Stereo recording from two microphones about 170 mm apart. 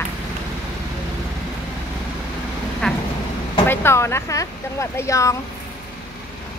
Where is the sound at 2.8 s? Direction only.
5° left (ahead or behind).